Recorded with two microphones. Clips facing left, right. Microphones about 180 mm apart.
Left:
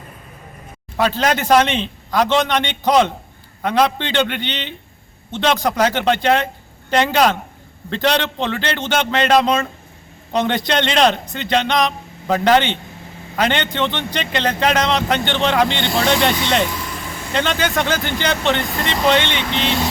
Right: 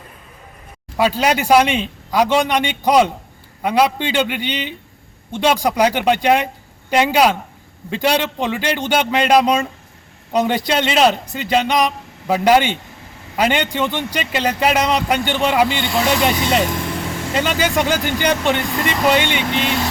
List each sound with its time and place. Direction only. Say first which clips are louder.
0.9 s a man's voice: right 1 dB; 10° right (ahead or behind)